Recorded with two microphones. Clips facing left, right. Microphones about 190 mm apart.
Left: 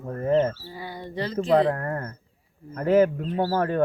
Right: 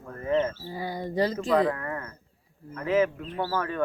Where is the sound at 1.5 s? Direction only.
35° left (ahead or behind).